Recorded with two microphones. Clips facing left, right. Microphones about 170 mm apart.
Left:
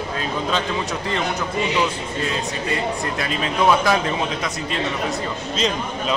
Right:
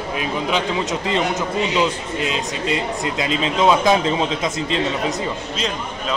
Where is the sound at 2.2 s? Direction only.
20° right (ahead or behind).